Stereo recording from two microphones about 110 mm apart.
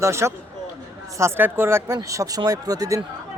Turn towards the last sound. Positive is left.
turn(degrees=-30)  # may be behind; listen again after turning